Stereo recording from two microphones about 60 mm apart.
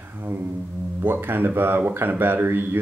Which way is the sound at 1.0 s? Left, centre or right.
Right.